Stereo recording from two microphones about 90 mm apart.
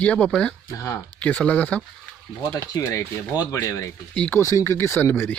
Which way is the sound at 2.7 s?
30° left (ahead or behind).